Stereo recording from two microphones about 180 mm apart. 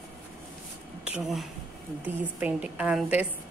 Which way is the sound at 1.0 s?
5° right (ahead or behind).